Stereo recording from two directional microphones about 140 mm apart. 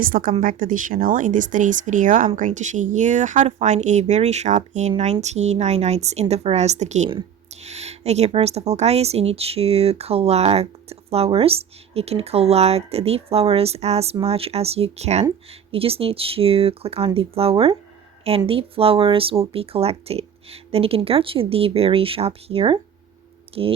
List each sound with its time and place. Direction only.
0.0 s a woman's voice: 90° right; by 23.7 s 35° right (ahead or behind)